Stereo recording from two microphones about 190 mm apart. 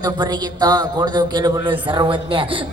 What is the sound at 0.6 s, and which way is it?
A man's voice, 20° right (ahead or behind).